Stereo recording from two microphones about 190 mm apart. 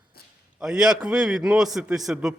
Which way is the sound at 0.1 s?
55° left (ahead or behind).